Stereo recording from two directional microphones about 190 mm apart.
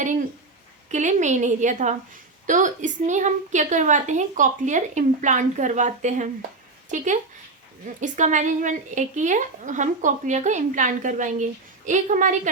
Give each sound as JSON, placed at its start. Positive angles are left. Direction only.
{"t": 0.9, "sound": "a woman's voice", "side_deg": -40}